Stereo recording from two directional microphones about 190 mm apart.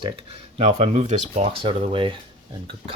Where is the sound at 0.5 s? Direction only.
35° right (ahead or behind).